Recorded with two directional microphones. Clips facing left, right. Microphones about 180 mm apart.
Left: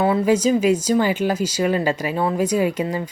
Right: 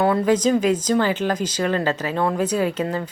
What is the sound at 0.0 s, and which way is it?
Speech, 5° left (ahead or behind).